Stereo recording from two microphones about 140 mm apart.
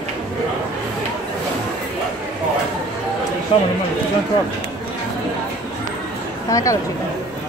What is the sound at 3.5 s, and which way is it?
Speech, 40° left (ahead or behind).